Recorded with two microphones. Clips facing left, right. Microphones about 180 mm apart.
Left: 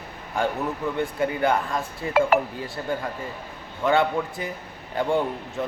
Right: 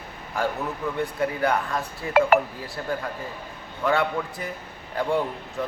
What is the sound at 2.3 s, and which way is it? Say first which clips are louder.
Speech: right 2 dB; 60° right (ahead or behind).